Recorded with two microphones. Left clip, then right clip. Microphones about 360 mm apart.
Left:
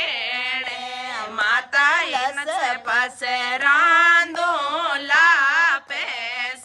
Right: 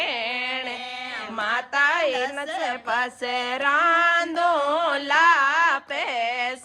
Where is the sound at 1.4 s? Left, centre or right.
Centre.